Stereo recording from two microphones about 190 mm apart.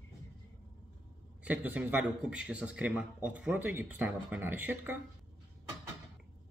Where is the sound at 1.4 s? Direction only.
10° right (ahead or behind).